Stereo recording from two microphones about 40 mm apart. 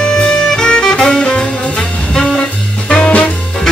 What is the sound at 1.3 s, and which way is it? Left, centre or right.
Brass instrument, centre.